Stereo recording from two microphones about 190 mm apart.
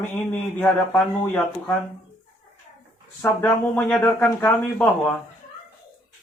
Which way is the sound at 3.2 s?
10° left (ahead or behind).